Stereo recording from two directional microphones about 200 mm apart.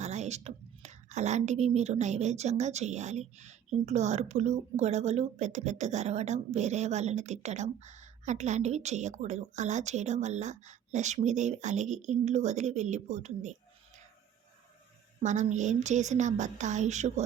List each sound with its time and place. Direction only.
0.0 s a woman's voice: 35° right (ahead or behind)
15.2 s a woman's voice: 35° right (ahead or behind)